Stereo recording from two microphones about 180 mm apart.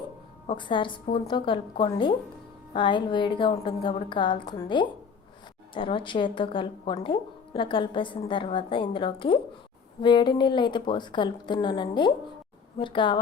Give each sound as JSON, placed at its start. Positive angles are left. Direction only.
{"t": 0.4, "sound": "speech", "side_deg": 25}